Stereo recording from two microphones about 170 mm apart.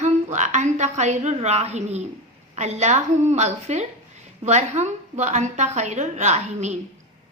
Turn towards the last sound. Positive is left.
turn(degrees=-40)  # may be behind; listen again after turning